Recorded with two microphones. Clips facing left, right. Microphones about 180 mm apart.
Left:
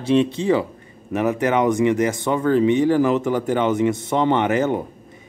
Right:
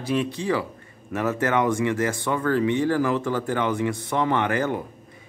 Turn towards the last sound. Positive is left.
turn(degrees=20)  # may be behind; listen again after turning